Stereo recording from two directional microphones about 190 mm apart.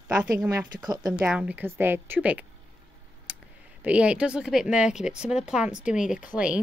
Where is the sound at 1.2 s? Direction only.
5° right (ahead or behind).